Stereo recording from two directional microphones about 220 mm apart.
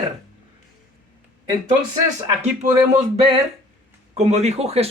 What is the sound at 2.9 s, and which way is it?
Speech, 25° right (ahead or behind).